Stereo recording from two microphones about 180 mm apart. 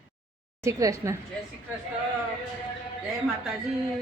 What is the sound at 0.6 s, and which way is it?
Speech, 15° right (ahead or behind).